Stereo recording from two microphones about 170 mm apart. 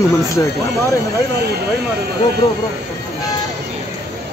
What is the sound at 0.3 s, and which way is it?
Speech, 20° left (ahead or behind).